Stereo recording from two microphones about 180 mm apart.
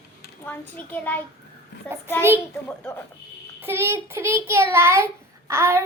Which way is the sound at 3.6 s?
15° right (ahead or behind).